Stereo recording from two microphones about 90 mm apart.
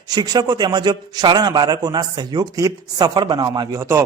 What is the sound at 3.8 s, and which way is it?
Speech, 30° right (ahead or behind).